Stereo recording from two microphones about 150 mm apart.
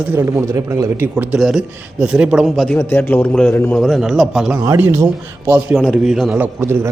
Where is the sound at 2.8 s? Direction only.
15° left (ahead or behind).